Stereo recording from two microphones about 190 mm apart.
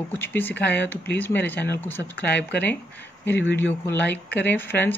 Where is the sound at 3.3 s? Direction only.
65° left (ahead or behind).